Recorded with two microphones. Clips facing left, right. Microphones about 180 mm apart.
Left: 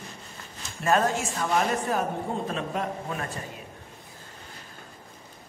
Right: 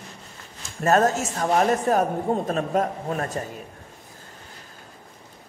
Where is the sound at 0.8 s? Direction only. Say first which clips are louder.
Right 4 dB; 45° right (ahead or behind).